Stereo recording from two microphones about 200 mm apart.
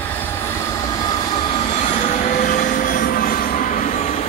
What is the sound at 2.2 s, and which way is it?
Train, 40° left (ahead or behind).